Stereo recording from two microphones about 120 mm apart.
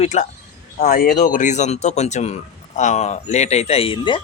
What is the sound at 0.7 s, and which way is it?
Speech, 85° left.